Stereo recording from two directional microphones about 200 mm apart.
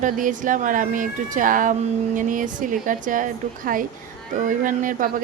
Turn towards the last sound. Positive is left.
turn(degrees=-40)  # may be behind; listen again after turning